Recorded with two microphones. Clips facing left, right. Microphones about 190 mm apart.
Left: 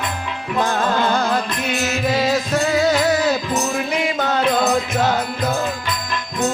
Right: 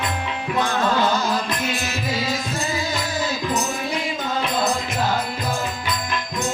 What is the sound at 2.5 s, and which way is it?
Music, 70° left (ahead or behind).